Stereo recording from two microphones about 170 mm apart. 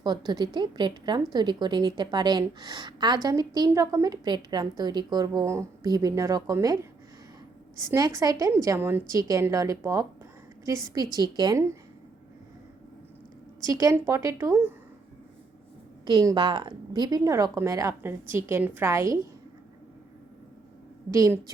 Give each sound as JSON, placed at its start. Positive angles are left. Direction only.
{"t": 0.0, "sound": "a woman's voice", "side_deg": -25}
{"t": 7.9, "sound": "a woman's voice", "side_deg": -20}
{"t": 13.7, "sound": "a woman's voice", "side_deg": -20}
{"t": 16.0, "sound": "a woman's voice", "side_deg": -25}
{"t": 21.1, "sound": "a woman's voice", "side_deg": -15}